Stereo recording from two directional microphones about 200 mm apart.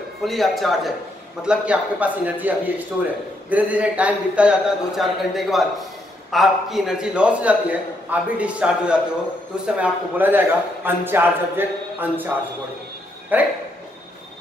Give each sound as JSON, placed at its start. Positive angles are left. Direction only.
{"t": 0.2, "sound": "a man's voice", "side_deg": 0}
{"t": 13.3, "sound": "a man's voice", "side_deg": -10}